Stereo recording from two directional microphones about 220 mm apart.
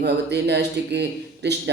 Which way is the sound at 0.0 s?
50° right (ahead or behind).